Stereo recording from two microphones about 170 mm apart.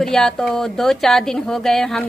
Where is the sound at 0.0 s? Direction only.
5° left (ahead or behind).